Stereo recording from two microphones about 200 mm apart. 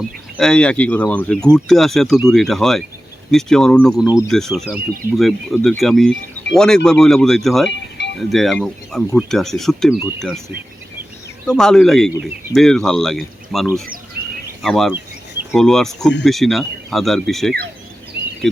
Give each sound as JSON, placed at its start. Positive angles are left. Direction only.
{"t": 0.3, "sound": "speech", "side_deg": 5}
{"t": 7.7, "sound": "music", "side_deg": 60}
{"t": 8.3, "sound": "speech", "side_deg": 0}
{"t": 11.4, "sound": "speech", "side_deg": 5}
{"t": 14.2, "sound": "a sound", "side_deg": -50}
{"t": 14.6, "sound": "speech", "side_deg": 0}